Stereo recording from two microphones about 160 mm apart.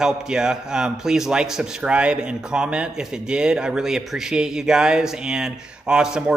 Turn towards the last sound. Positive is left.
turn(degrees=-5)  # may be behind; listen again after turning